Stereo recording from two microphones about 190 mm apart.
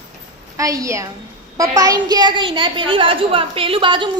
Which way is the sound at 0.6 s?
15° right (ahead or behind).